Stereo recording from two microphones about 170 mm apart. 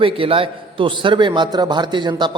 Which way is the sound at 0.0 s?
30° right (ahead or behind).